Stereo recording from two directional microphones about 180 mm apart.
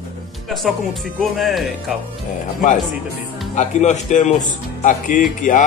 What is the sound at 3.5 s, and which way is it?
Speech, 40° left (ahead or behind).